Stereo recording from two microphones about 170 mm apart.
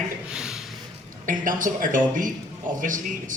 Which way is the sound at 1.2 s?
50° right (ahead or behind).